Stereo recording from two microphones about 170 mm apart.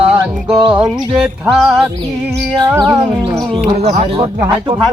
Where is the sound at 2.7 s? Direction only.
20° right (ahead or behind).